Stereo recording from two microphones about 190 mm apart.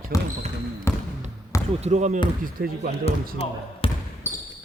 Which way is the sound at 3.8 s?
30° left (ahead or behind).